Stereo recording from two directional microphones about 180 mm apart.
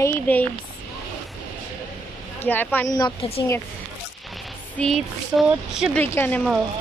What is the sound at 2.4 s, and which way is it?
Speech, 10° left (ahead or behind).